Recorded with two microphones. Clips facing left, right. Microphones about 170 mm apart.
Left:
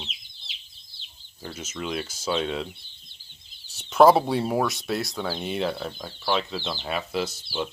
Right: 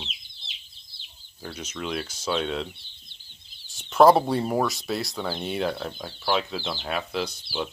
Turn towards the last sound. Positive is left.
turn(degrees=0)  # may be behind; listen again after turning